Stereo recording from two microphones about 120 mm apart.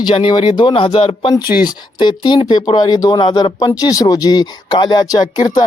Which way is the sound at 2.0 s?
40° left (ahead or behind).